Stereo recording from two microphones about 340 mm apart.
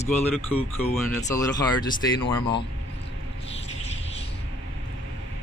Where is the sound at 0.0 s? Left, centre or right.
Centre.